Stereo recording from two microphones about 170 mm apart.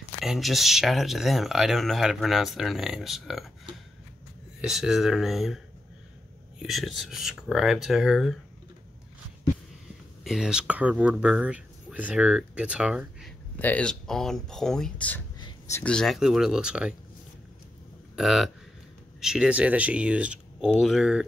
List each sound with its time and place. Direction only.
0.2 s speech: centre (ahead or behind)
6.6 s speech: centre (ahead or behind)
10.2 s speech: 5° right (ahead or behind)
13.6 s speech: 10° left (ahead or behind)
15.3 s a sound: 25° left (ahead or behind)
15.8 s speech: 5° left (ahead or behind)
18.1 s speech: centre (ahead or behind)